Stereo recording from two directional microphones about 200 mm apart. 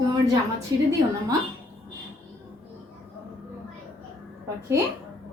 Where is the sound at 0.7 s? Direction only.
15° right (ahead or behind).